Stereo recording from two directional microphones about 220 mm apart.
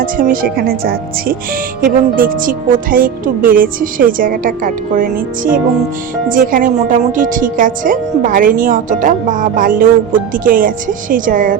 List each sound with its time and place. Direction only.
0.0 s speech: 40° right (ahead or behind)